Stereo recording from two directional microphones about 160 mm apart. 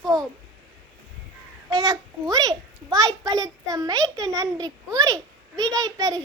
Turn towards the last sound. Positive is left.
turn(degrees=-20)  # may be behind; listen again after turning